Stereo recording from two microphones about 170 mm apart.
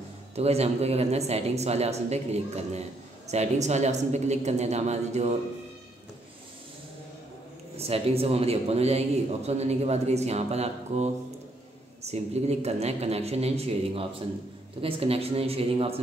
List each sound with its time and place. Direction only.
0.4 s a man's voice: 40° right (ahead or behind)
7.7 s a man's voice: 35° right (ahead or behind)